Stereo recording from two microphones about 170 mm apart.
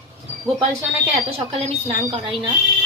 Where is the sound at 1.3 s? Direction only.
35° right (ahead or behind).